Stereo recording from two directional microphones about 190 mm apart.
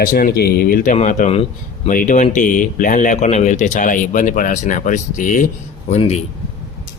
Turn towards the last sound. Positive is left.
turn(degrees=35)  # may be behind; listen again after turning